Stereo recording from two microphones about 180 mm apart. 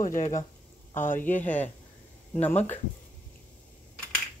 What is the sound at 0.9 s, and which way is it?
Speech, 45° left (ahead or behind).